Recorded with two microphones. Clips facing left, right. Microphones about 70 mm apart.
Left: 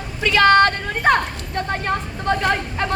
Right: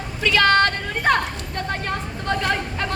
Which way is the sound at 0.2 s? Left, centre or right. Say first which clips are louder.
Left 3 dB; left.